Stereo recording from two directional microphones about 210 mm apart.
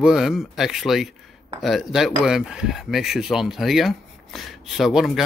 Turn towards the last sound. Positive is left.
turn(degrees=0)  # may be behind; listen again after turning